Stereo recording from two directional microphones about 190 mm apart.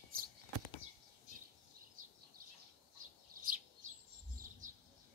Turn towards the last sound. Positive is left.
turn(degrees=-45)  # may be behind; listen again after turning